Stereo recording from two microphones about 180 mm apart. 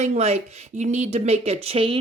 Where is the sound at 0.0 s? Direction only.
35° right (ahead or behind).